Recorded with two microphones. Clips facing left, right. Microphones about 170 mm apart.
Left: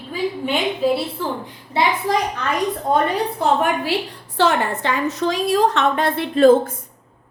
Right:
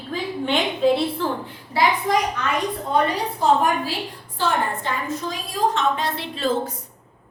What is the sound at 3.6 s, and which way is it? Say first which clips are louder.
A woman's voice: left 2 dB; 70° left (ahead or behind).